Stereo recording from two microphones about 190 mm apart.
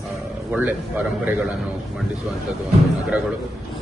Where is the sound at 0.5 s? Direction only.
10° right (ahead or behind).